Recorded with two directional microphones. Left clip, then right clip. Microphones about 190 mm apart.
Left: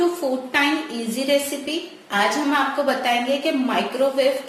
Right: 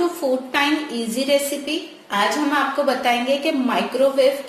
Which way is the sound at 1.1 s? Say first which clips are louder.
Right 1 dB; 15° right (ahead or behind).